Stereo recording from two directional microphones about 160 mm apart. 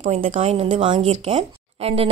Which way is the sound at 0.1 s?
40° right (ahead or behind).